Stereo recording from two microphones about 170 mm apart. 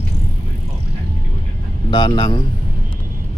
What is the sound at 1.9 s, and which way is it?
Speech, 25° left (ahead or behind).